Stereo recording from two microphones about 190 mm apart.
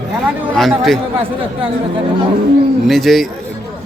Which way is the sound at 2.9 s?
Centre (ahead or behind).